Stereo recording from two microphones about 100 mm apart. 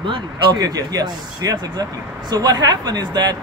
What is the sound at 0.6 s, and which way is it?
Speech, 40° right (ahead or behind).